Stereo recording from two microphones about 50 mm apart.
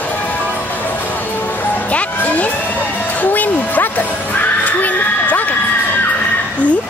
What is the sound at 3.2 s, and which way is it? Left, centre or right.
Neigh, left.